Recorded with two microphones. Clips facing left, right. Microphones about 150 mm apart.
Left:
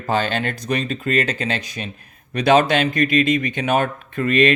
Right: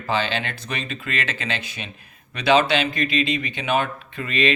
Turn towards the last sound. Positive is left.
turn(degrees=50)  # may be behind; listen again after turning